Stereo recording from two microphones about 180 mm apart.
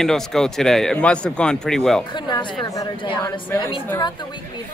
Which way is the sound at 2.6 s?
25° left (ahead or behind).